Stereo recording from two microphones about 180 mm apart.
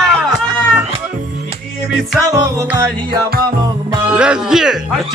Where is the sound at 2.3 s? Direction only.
20° right (ahead or behind).